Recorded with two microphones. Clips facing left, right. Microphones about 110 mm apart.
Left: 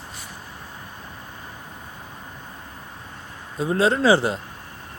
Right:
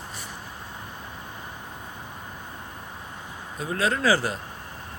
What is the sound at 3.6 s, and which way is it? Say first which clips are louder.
Speech: left 6 dB; 30° left (ahead or behind).